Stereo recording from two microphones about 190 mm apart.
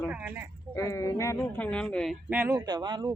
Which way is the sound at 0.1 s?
10° right (ahead or behind).